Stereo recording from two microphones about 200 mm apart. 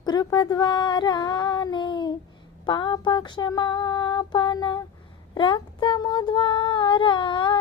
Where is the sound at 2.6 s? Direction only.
20° left (ahead or behind).